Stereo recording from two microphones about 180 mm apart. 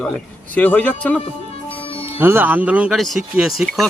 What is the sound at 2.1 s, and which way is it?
A man's voice, 10° right (ahead or behind).